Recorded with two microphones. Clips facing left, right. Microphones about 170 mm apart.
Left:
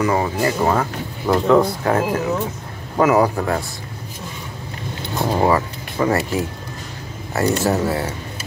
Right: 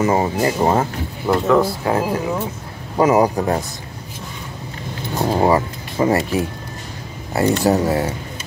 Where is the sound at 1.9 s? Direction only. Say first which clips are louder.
Left 1 dB; 15° right (ahead or behind).